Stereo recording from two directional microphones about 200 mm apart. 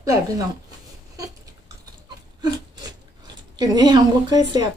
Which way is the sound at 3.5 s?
20° right (ahead or behind).